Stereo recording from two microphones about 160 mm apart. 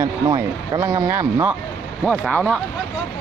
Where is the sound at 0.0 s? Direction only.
20° right (ahead or behind).